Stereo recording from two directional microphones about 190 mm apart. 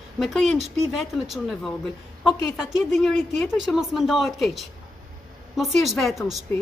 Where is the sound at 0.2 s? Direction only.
Centre (ahead or behind).